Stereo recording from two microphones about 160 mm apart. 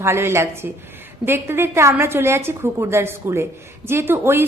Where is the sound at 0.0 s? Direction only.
15° right (ahead or behind).